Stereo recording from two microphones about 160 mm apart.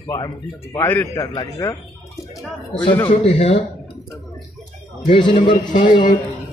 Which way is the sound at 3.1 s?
40° left (ahead or behind).